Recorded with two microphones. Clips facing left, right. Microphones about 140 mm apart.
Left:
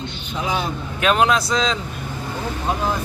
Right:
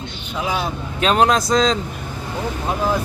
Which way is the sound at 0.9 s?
35° right (ahead or behind).